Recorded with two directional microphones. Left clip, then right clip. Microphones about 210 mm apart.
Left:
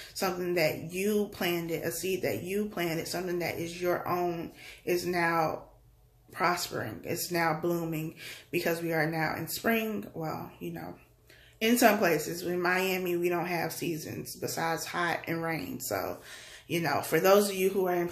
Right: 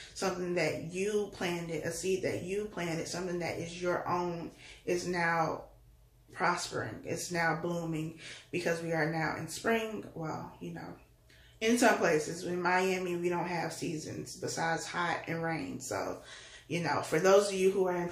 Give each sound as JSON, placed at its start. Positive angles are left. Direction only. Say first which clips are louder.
{"t": 0.1, "sound": "speech", "louder": "left 3 dB", "side_deg": 45}
{"t": 11.6, "sound": "speech", "louder": "left 3 dB", "side_deg": 45}